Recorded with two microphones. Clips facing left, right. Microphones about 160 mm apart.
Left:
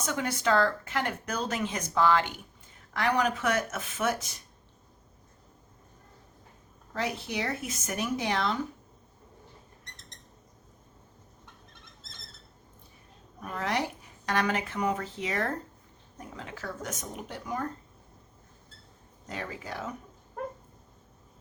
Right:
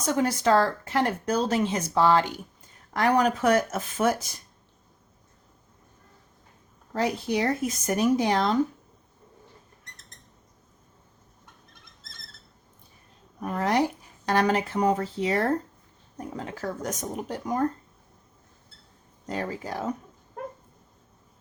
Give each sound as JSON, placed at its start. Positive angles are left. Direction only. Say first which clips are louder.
{"t": 0.0, "sound": "speech", "louder": "right 6 dB", "side_deg": -35}
{"t": 6.9, "sound": "speech", "louder": "right 7 dB", "side_deg": -40}
{"t": 13.5, "sound": "speech", "louder": "right 7 dB", "side_deg": -40}
{"t": 19.3, "sound": "speech", "louder": "right 6 dB", "side_deg": -40}